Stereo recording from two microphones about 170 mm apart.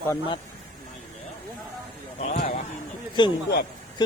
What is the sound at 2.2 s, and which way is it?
Speech, 55° left (ahead or behind).